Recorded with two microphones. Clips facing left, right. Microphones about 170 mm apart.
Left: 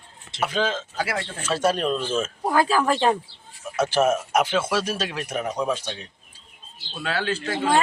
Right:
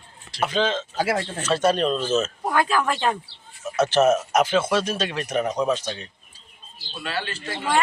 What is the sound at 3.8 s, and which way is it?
Speech, 10° left (ahead or behind).